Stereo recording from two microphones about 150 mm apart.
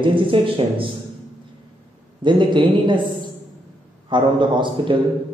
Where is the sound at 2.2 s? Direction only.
30° right (ahead or behind).